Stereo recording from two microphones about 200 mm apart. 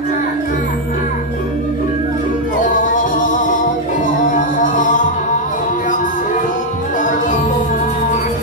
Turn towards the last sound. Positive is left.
turn(degrees=40)  # may be behind; listen again after turning